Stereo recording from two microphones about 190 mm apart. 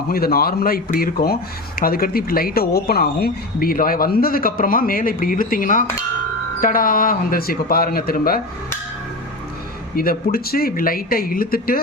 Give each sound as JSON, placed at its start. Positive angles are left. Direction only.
{"t": 0.1, "sound": "speech", "side_deg": 50}
{"t": 9.9, "sound": "speech", "side_deg": 50}